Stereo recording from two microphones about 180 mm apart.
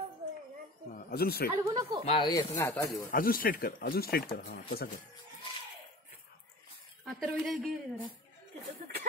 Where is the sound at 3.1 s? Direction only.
55° left (ahead or behind).